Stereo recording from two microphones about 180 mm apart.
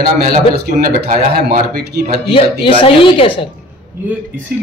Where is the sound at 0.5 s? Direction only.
60° right (ahead or behind).